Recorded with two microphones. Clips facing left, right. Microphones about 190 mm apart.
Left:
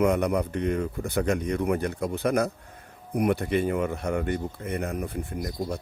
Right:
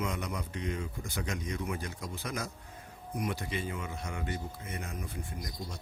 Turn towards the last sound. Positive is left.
turn(degrees=60)  # may be behind; listen again after turning